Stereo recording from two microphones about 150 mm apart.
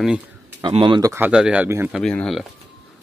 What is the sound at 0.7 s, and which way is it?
Speech, 35° right (ahead or behind).